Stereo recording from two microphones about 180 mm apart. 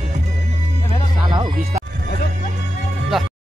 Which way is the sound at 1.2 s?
25° right (ahead or behind).